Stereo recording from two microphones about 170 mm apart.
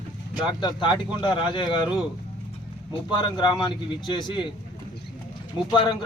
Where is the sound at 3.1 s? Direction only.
25° left (ahead or behind).